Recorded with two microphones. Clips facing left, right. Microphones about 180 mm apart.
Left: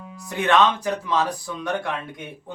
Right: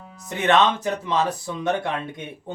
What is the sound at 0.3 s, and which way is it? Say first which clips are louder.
Speech: even; 20° right (ahead or behind).